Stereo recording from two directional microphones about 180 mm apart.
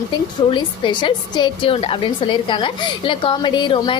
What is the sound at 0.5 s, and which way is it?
A woman's voice, 25° left (ahead or behind).